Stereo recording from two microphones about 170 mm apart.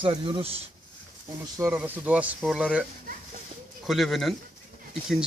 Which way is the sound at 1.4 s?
15° right (ahead or behind).